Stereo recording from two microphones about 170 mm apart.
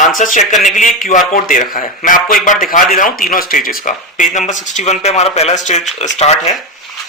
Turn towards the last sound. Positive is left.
turn(degrees=40)  # may be behind; listen again after turning